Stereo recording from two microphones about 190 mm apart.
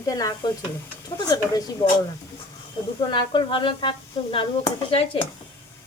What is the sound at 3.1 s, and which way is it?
Speech, 25° left (ahead or behind).